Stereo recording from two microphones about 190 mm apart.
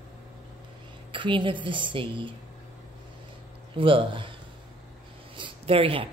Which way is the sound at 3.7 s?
25° right (ahead or behind).